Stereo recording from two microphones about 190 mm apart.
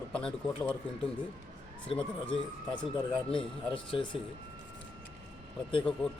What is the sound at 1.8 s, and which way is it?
Speech, 30° left (ahead or behind).